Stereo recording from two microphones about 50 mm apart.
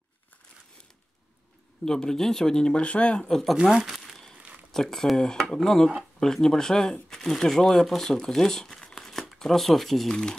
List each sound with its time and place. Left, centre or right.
1.9 s speech: centre
3.3 s speech: centre
3.7 s speech: centre
4.7 s speech: centre